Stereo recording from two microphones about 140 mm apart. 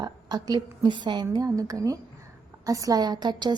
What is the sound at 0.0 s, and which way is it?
A woman's voice, 30° right (ahead or behind).